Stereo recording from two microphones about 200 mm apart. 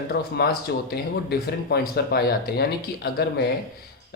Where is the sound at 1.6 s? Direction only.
50° left (ahead or behind).